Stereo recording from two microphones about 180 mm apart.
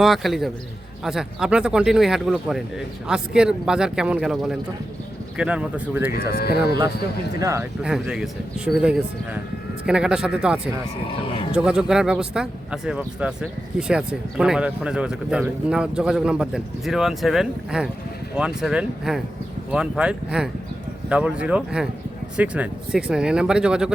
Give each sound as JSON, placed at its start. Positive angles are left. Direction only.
{"t": 0.0, "sound": "speech", "side_deg": 0}
{"t": 6.1, "sound": "speech", "side_deg": 60}
{"t": 7.3, "sound": "speech", "side_deg": -15}
{"t": 7.8, "sound": "speech", "side_deg": -5}